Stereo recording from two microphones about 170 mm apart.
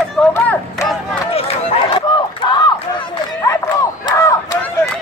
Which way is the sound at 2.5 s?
25° left (ahead or behind).